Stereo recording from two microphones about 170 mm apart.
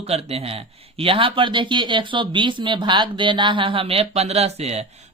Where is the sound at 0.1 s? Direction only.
35° right (ahead or behind).